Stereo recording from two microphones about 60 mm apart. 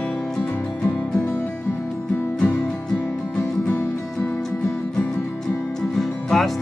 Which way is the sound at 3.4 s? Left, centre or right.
Left.